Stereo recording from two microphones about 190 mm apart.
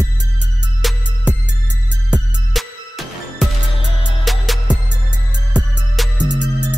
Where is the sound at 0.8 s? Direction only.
Centre (ahead or behind).